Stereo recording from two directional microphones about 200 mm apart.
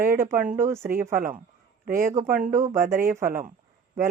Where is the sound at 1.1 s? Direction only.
40° right (ahead or behind).